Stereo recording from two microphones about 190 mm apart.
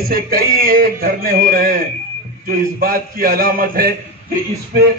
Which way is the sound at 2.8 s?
50° right (ahead or behind).